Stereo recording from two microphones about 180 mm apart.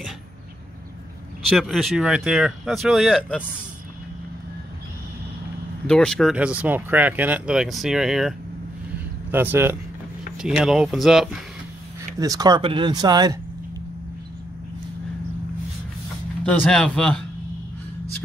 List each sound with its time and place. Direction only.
1.5 s speech: centre (ahead or behind)
5.9 s speech: 5° left (ahead or behind)
12.2 s speech: 20° right (ahead or behind)
16.4 s speech: 5° left (ahead or behind)